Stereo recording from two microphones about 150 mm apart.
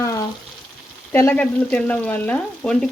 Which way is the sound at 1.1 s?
15° left (ahead or behind).